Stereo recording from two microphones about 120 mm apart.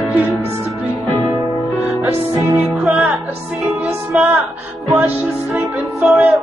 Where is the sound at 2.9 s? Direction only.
Centre (ahead or behind).